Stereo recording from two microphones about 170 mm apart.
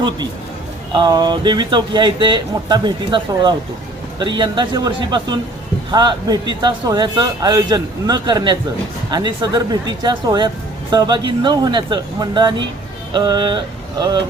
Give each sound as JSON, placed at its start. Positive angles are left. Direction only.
{"t": 0.9, "sound": "a man's voice", "side_deg": -25}